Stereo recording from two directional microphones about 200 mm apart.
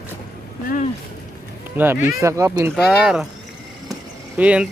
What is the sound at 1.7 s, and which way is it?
Speech, 10° right (ahead or behind).